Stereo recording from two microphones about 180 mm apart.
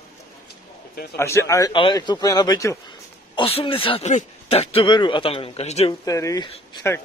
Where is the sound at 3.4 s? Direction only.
30° left (ahead or behind).